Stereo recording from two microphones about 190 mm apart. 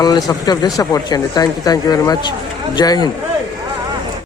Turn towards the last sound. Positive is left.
turn(degrees=20)  # may be behind; listen again after turning